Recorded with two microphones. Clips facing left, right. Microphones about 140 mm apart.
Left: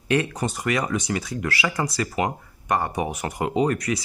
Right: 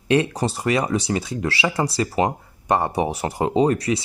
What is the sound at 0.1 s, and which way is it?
Speech, 30° right (ahead or behind).